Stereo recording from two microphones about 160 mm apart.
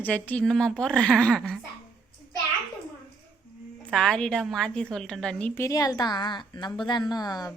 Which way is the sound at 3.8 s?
5° left (ahead or behind).